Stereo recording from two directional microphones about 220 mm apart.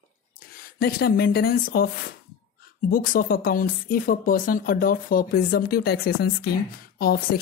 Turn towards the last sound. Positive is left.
turn(degrees=45)  # may be behind; listen again after turning